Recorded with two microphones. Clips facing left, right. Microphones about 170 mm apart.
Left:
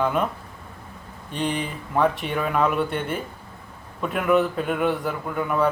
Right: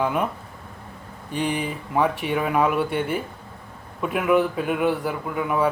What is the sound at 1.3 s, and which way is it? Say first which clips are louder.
Speech: right 1 dB; 10° right (ahead or behind).